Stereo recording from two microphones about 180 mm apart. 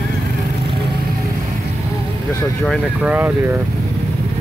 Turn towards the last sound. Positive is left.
turn(degrees=-10)  # may be behind; listen again after turning